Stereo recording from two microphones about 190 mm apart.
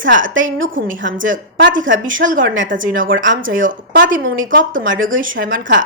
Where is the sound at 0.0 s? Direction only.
85° right.